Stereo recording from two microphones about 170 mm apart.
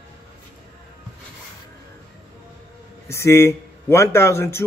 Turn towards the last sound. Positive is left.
turn(degrees=15)  # may be behind; listen again after turning